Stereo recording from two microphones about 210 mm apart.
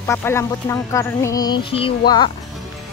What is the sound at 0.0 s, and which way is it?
A woman's voice, 10° left (ahead or behind).